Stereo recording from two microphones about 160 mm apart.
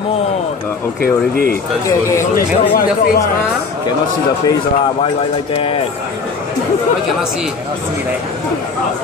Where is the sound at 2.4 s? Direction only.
65° left (ahead or behind).